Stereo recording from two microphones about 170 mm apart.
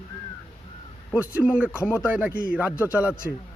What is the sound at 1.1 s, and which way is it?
Speech, 10° right (ahead or behind).